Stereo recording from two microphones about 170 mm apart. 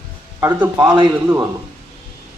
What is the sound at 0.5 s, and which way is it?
Speech, 10° right (ahead or behind).